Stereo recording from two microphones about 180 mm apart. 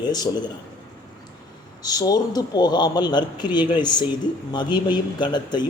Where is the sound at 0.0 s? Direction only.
25° left (ahead or behind).